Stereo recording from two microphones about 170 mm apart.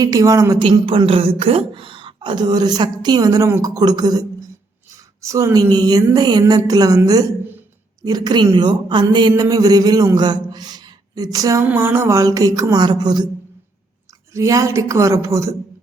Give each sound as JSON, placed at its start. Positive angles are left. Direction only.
{"t": 0.0, "sound": "a woman's voice", "side_deg": -20}
{"t": 14.3, "sound": "a woman's voice", "side_deg": -20}